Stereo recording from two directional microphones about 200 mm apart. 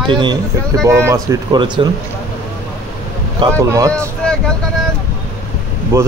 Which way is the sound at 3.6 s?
15° right (ahead or behind).